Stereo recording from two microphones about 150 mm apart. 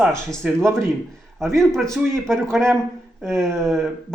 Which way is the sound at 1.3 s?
Centre (ahead or behind).